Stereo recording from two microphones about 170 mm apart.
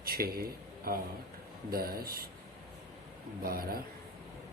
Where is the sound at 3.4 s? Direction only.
60° right (ahead or behind).